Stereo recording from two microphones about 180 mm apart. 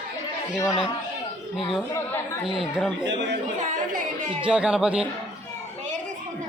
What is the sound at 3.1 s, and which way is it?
Speech, 80° right.